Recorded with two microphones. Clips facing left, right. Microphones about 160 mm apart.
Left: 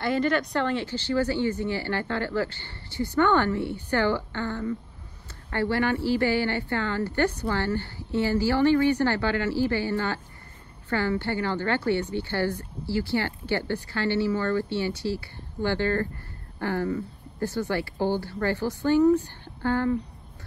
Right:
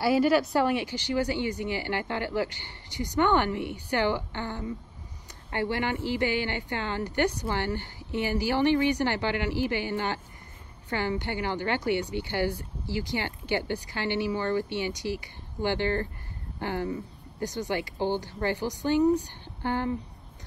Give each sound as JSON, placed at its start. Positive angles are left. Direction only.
{"t": 0.0, "sound": "speech", "side_deg": -5}